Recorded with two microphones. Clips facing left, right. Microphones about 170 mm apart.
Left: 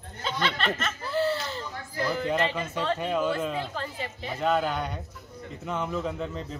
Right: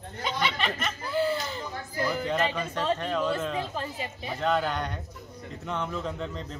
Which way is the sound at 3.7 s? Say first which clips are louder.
Even; 15° right (ahead or behind).